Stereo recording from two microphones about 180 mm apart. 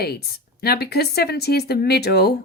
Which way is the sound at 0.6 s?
60° left (ahead or behind).